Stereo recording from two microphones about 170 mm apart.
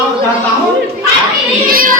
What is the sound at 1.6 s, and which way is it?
Child singing, 55° right (ahead or behind).